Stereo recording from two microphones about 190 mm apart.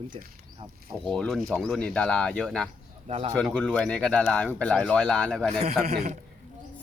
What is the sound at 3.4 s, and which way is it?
A man's voice, 5° left (ahead or behind).